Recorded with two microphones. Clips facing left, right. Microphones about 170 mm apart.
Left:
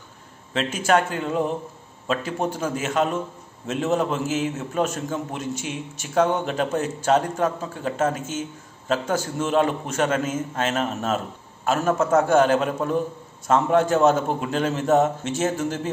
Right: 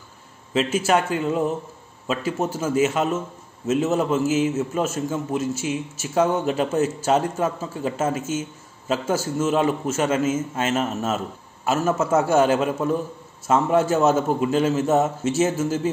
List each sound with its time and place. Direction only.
0.5 s a man's voice: 5° right (ahead or behind)